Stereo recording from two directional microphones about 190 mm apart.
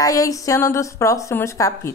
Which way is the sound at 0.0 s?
20° left (ahead or behind).